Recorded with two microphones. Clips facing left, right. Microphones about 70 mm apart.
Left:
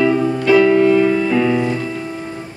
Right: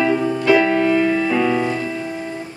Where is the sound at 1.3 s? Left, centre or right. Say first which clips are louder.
Left 2 dB; centre.